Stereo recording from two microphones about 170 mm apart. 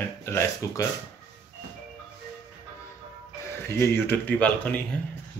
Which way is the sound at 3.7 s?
15° left (ahead or behind).